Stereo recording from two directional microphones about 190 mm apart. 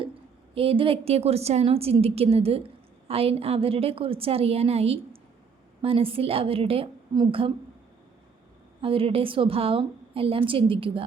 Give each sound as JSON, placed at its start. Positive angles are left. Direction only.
{"t": 0.5, "sound": "a woman's voice", "side_deg": -30}
{"t": 8.8, "sound": "a woman's voice", "side_deg": -30}